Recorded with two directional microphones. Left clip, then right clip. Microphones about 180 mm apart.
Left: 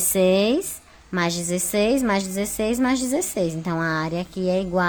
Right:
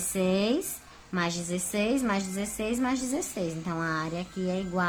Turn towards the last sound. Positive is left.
turn(degrees=40)  # may be behind; listen again after turning